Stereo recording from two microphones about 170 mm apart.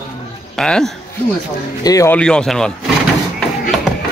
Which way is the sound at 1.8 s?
20° left (ahead or behind).